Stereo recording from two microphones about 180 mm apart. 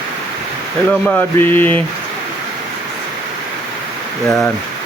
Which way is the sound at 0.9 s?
10° left (ahead or behind).